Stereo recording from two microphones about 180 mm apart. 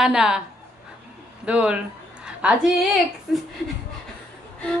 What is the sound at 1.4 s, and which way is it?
A man's voice, 5° right (ahead or behind).